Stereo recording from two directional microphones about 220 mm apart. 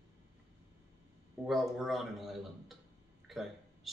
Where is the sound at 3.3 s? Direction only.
Centre (ahead or behind).